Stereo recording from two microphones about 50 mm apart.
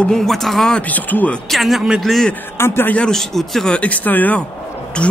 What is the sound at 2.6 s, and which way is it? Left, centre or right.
Speech, left.